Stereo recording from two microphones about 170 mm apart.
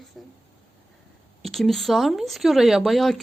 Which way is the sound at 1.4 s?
Centre (ahead or behind).